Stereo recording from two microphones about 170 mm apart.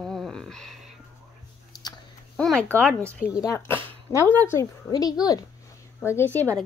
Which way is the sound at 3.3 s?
20° left (ahead or behind).